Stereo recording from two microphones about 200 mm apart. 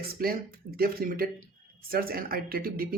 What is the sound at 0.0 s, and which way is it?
Speech, 50° right (ahead or behind).